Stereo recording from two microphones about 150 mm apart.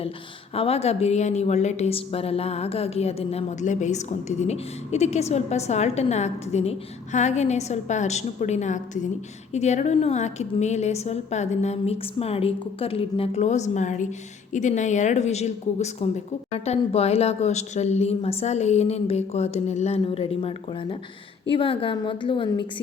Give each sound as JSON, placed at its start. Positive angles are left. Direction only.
{"t": 0.5, "sound": "a woman's voice", "side_deg": 40}
{"t": 21.5, "sound": "a woman's voice", "side_deg": 35}